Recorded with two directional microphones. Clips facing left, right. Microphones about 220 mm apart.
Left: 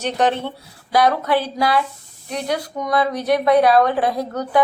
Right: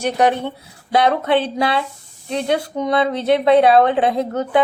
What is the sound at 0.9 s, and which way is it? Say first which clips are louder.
Speech: right 1 dB; 25° right (ahead or behind).